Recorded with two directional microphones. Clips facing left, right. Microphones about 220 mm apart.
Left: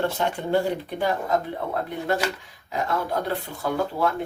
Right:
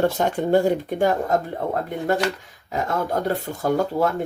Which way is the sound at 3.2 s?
45° right (ahead or behind).